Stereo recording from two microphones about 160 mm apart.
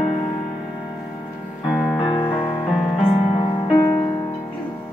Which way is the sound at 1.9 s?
30° left (ahead or behind).